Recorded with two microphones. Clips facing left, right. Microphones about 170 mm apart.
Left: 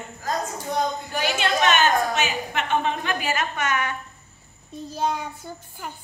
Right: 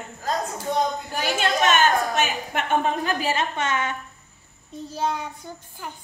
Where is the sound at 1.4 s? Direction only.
45° right (ahead or behind); by 4.0 s 25° right (ahead or behind).